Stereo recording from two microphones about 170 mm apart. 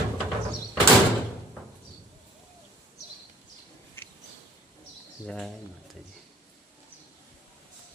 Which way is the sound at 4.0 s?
10° left (ahead or behind).